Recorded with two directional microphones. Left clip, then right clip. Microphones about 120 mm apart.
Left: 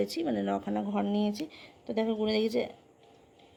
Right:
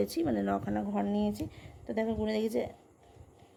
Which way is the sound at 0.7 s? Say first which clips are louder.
Left 1 dB; 20° left (ahead or behind).